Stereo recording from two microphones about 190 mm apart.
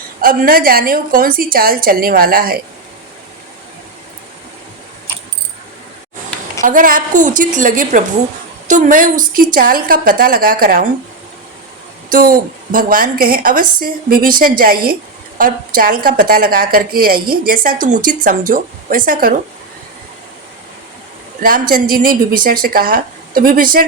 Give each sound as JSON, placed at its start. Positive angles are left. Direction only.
{"t": 0.2, "sound": "a woman's voice", "side_deg": -50}
{"t": 6.6, "sound": "a woman's voice", "side_deg": -45}
{"t": 12.0, "sound": "a woman's voice", "side_deg": -50}
{"t": 21.4, "sound": "a woman's voice", "side_deg": -50}